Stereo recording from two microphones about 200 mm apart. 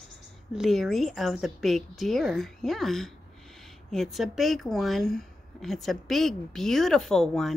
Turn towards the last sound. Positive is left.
turn(degrees=0)  # may be behind; listen again after turning